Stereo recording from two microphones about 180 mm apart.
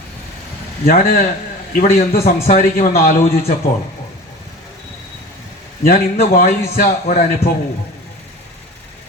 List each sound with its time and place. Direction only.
0.9 s a man's voice: 55° left (ahead or behind)
5.8 s a man's voice: 55° left (ahead or behind)